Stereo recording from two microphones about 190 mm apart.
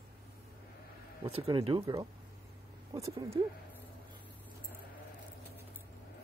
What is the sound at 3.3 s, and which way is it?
Speech, 25° right (ahead or behind).